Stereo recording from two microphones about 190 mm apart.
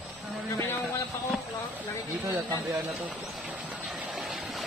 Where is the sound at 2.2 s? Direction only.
20° right (ahead or behind).